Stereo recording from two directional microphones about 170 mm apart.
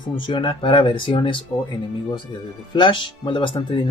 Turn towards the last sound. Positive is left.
turn(degrees=30)  # may be behind; listen again after turning